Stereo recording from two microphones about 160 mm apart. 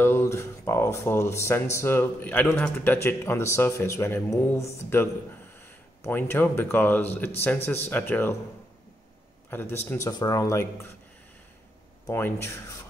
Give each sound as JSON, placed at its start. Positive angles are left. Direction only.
{"t": 0.0, "sound": "speech", "side_deg": 15}
{"t": 6.0, "sound": "speech", "side_deg": 15}
{"t": 9.5, "sound": "a man's voice", "side_deg": 15}
{"t": 12.1, "sound": "speech", "side_deg": 15}